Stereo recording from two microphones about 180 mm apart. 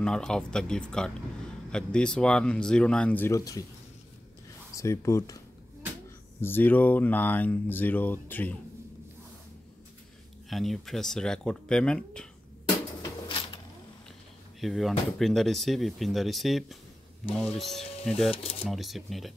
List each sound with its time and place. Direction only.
0.0 s speech: 5° left (ahead or behind)
4.7 s speech: 15° left (ahead or behind)
6.4 s speech: 10° left (ahead or behind)
10.5 s speech: centre (ahead or behind)
14.6 s speech: centre (ahead or behind)
18.3 s speech: 30° left (ahead or behind)
18.7 s speech: centre (ahead or behind)